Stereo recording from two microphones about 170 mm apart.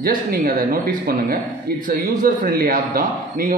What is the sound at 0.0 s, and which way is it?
A man's voice, 55° right (ahead or behind).